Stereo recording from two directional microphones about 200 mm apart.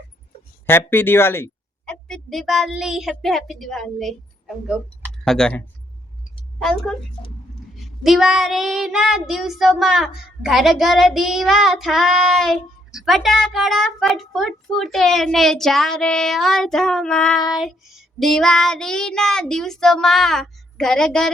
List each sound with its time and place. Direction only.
0.7 s a woman's voice: 10° left (ahead or behind)
7.2 s speech: 25° left (ahead or behind)
7.8 s child singing: centre (ahead or behind)